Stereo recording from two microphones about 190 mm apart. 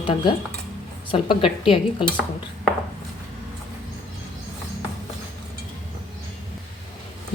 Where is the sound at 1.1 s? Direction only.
30° left (ahead or behind).